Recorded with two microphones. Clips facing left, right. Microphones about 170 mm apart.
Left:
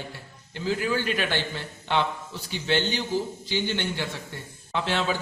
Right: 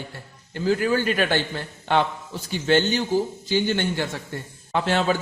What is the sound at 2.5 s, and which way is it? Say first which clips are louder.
A man's voice: right 6 dB; 45° right (ahead or behind).